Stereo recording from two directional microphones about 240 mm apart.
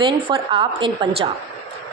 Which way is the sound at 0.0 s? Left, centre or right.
Right.